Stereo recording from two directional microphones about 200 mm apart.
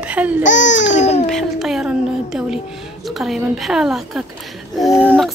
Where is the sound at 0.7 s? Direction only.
65° left (ahead or behind).